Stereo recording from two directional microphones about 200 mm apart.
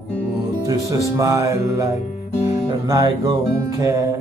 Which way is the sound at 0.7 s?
15° right (ahead or behind).